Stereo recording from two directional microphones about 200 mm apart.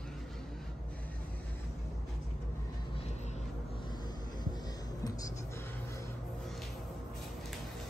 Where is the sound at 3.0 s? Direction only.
35° left (ahead or behind); by 6.0 s 15° left (ahead or behind).